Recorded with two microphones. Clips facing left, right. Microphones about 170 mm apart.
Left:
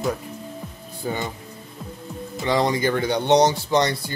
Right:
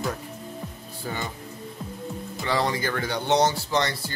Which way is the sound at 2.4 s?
15° left (ahead or behind).